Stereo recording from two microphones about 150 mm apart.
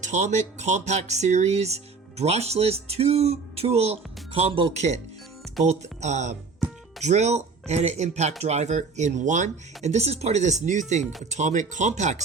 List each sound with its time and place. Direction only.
0.0 s speech: 55° right (ahead or behind)